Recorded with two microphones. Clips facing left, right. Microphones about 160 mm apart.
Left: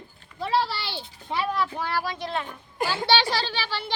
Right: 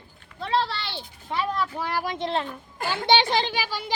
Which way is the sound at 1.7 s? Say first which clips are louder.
Right 1 dB; 15° right (ahead or behind).